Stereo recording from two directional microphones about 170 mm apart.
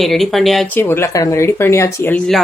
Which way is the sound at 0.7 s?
15° left (ahead or behind).